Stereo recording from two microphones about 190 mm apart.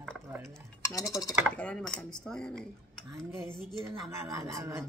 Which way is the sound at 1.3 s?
5° left (ahead or behind).